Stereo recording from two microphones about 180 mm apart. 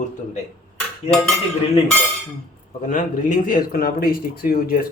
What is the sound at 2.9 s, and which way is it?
Speech, 50° left (ahead or behind).